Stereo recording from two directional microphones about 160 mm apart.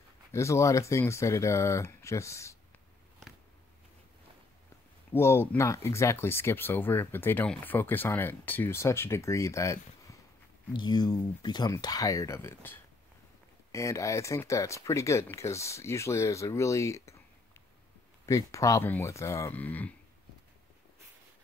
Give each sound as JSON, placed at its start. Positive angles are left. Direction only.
{"t": 0.3, "sound": "speech", "side_deg": 20}
{"t": 5.1, "sound": "speech", "side_deg": 15}
{"t": 18.2, "sound": "speech", "side_deg": 20}